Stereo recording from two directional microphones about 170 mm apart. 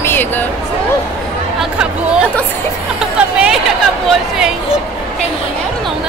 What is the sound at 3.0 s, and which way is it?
Music, 5° right (ahead or behind).